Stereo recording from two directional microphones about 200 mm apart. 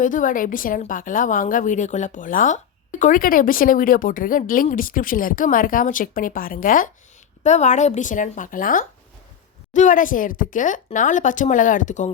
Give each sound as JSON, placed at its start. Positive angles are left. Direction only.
{"t": 0.0, "sound": "a woman's voice", "side_deg": 40}